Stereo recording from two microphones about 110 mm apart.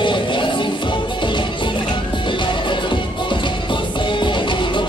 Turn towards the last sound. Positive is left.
turn(degrees=45)  # may be behind; listen again after turning